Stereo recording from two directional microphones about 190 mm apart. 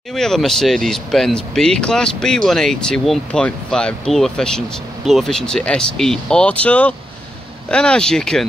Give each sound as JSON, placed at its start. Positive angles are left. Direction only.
{"t": 0.1, "sound": "speech", "side_deg": 0}